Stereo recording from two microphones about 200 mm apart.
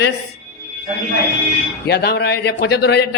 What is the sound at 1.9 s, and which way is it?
A man's voice, 55° left (ahead or behind).